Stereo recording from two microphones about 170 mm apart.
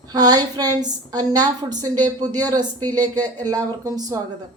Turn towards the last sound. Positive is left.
turn(degrees=-20)  # may be behind; listen again after turning